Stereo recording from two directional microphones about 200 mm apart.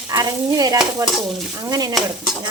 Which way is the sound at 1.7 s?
20° right (ahead or behind).